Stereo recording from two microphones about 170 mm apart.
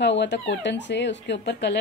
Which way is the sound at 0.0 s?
90° left.